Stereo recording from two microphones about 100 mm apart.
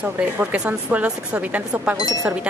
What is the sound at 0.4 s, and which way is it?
Speech, 15° right (ahead or behind).